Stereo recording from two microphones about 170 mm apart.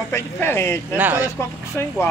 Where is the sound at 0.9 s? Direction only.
10° right (ahead or behind).